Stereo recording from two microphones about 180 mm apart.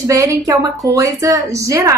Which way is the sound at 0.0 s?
15° right (ahead or behind).